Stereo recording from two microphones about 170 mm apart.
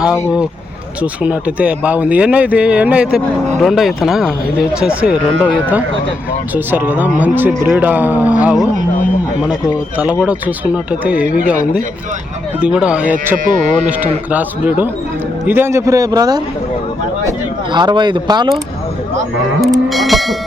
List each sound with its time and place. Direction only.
1.0 s speech: 10° right (ahead or behind)
6.5 s speech: 10° right (ahead or behind)
10.0 s speech: 5° right (ahead or behind); by 16.4 s 20° right (ahead or behind)
17.7 s speech: 25° right (ahead or behind)
19.6 s speech: centre (ahead or behind)